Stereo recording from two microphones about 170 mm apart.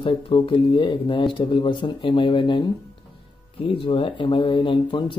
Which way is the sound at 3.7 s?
30° left (ahead or behind).